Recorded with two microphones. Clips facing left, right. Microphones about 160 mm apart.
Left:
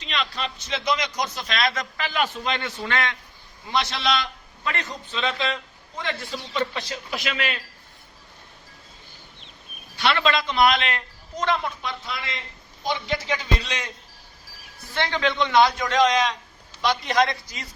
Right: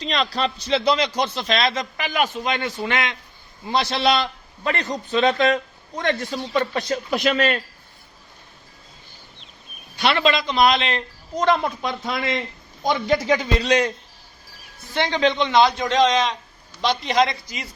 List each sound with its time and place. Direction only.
0.0 s a man's voice: 35° right (ahead or behind); by 3.2 s 20° right (ahead or behind)
3.7 s a man's voice: 35° right (ahead or behind)
10.0 s a man's voice: 20° right (ahead or behind); by 13.9 s 35° right (ahead or behind)
14.9 s a man's voice: 20° right (ahead or behind)